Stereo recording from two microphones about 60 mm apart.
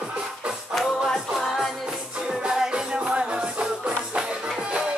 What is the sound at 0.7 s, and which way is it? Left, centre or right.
Music, centre.